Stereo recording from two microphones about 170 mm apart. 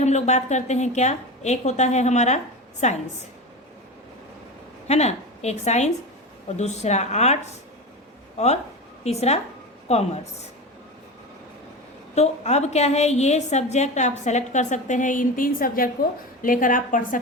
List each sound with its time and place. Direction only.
0.0 s a woman's voice: 40° left (ahead or behind)
4.9 s a woman's voice: 40° left (ahead or behind)
9.0 s a woman's voice: 40° left (ahead or behind)
12.1 s a woman's voice: 40° left (ahead or behind)